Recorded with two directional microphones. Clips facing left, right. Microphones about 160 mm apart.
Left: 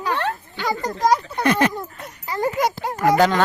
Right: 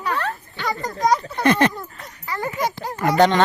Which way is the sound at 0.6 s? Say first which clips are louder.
Left 1 dB; 5° left (ahead or behind).